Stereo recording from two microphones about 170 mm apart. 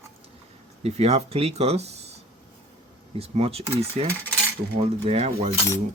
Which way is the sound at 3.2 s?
35° right (ahead or behind).